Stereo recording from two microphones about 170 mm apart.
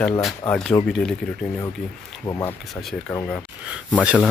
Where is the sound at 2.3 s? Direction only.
20° left (ahead or behind).